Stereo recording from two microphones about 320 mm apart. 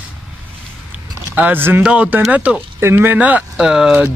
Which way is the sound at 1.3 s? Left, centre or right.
Centre.